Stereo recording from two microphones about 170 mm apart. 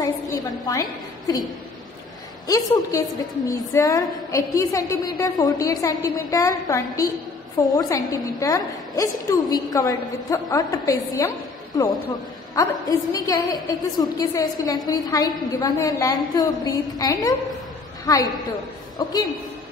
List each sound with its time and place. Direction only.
0.0 s a woman's voice: 20° left (ahead or behind)
2.4 s a woman's voice: 20° left (ahead or behind)
12.5 s a woman's voice: 20° left (ahead or behind)